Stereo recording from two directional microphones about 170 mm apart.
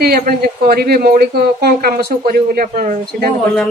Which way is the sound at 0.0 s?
60° right (ahead or behind).